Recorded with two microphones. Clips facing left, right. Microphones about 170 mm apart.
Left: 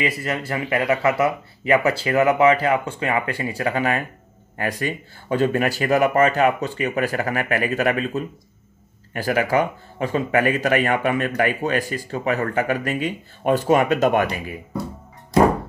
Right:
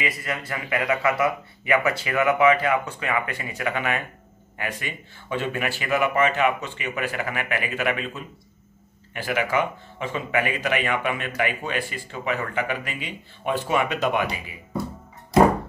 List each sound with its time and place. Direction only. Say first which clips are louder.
0.0 s speech: left 5 dB; 30° left (ahead or behind); by 14.5 s 50° left (ahead or behind)